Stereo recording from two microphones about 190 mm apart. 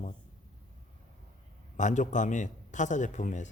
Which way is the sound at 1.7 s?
40° left (ahead or behind).